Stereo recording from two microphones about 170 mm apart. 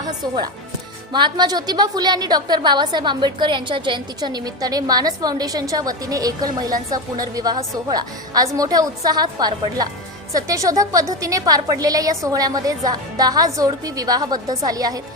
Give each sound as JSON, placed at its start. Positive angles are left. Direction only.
{"t": 1.1, "sound": "a woman's voice", "side_deg": -25}